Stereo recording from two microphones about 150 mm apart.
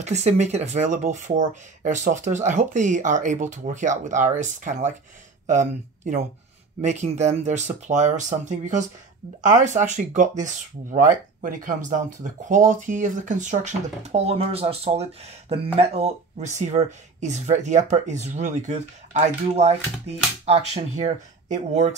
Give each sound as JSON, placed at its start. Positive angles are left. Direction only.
{"t": 0.0, "sound": "speech", "side_deg": -50}